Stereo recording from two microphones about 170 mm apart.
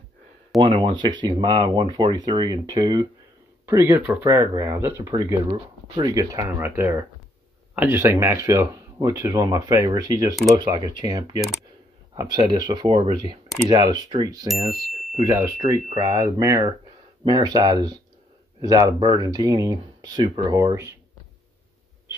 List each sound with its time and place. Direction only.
0.6 s speech: 30° right (ahead or behind)